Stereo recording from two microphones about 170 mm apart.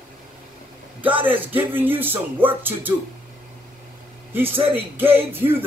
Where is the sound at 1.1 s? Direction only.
10° right (ahead or behind).